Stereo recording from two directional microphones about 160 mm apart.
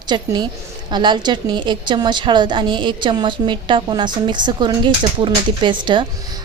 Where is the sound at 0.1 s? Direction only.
30° right (ahead or behind).